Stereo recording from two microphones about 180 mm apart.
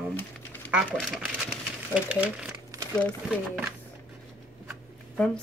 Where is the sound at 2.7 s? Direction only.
20° right (ahead or behind).